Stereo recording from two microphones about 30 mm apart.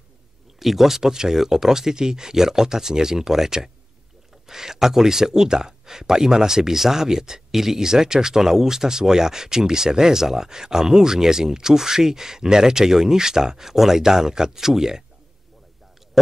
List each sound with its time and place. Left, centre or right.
0.6 s speech: centre